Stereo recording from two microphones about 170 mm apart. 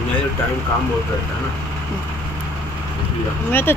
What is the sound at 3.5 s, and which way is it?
Speech, 10° left (ahead or behind).